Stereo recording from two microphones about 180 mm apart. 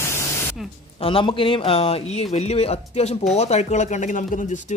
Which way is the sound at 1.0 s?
30° left (ahead or behind).